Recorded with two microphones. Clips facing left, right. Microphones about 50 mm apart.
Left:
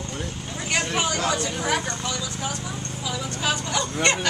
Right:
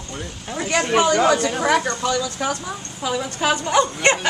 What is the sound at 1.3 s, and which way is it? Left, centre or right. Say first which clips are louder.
Speech: right 7 dB; right.